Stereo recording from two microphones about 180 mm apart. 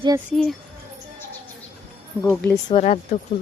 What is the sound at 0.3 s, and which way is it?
Speech, 5° left (ahead or behind).